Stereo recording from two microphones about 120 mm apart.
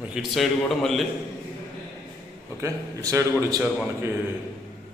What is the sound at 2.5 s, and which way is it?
A man's voice, 25° right (ahead or behind).